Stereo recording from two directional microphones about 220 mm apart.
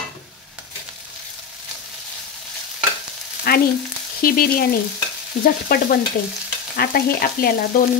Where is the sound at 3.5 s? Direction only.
45° left (ahead or behind).